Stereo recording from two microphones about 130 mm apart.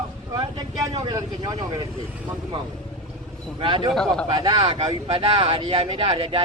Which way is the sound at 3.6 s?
40° right (ahead or behind).